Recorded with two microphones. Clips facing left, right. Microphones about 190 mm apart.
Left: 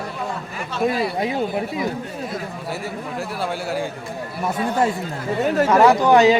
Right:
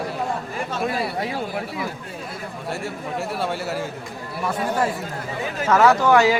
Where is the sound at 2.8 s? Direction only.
Centre (ahead or behind).